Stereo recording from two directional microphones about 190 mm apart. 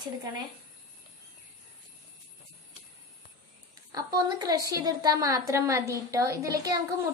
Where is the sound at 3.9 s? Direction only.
20° right (ahead or behind).